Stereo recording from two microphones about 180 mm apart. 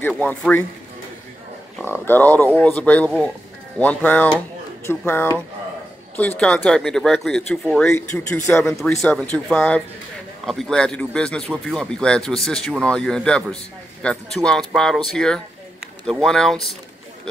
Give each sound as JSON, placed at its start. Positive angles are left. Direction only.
{"t": 0.2, "sound": "speech", "side_deg": 5}
{"t": 1.9, "sound": "speech", "side_deg": 10}
{"t": 7.8, "sound": "speech", "side_deg": 15}
{"t": 8.7, "sound": "speech", "side_deg": 5}